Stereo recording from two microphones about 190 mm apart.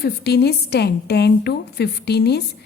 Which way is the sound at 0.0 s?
60° left (ahead or behind).